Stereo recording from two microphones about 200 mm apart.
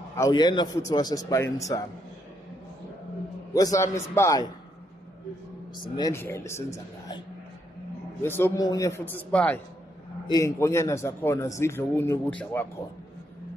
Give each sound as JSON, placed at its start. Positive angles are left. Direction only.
{"t": 0.1, "sound": "a man's voice", "side_deg": 20}
{"t": 3.5, "sound": "a man's voice", "side_deg": 15}
{"t": 5.8, "sound": "a man's voice", "side_deg": 20}
{"t": 8.2, "sound": "a man's voice", "side_deg": 10}
{"t": 10.2, "sound": "a man's voice", "side_deg": 15}